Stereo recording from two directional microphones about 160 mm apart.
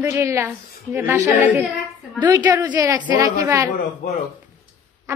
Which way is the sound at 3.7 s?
50° left (ahead or behind).